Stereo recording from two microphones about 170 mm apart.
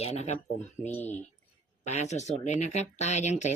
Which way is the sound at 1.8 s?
40° left (ahead or behind).